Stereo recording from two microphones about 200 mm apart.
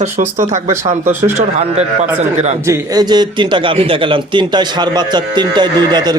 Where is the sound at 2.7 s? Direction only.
20° right (ahead or behind).